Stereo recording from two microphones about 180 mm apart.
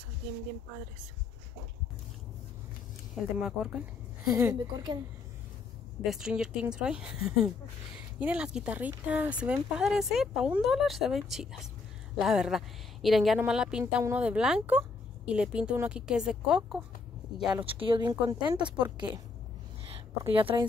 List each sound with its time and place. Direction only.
3.2 s speech: 5° right (ahead or behind)
6.0 s speech: 5° right (ahead or behind)
17.6 s speech: 30° right (ahead or behind)